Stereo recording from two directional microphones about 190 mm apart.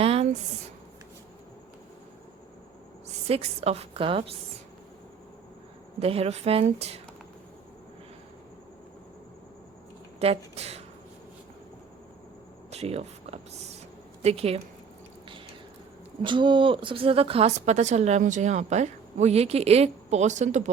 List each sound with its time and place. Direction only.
0.0 s a sound: 30° right (ahead or behind)
3.2 s speech: 30° right (ahead or behind)
6.0 s speech: 30° right (ahead or behind)
10.2 s speech: 35° right (ahead or behind)
12.7 s a sound: 35° right (ahead or behind)
14.2 s speech: 35° right (ahead or behind)
16.2 s speech: 25° right (ahead or behind)